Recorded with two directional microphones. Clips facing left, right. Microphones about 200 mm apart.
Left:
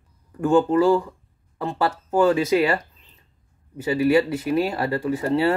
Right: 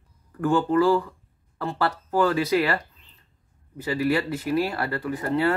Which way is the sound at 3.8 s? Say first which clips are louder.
Left 5 dB; 15° left (ahead or behind).